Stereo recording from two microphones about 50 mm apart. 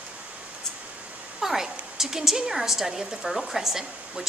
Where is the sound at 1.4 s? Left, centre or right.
Centre.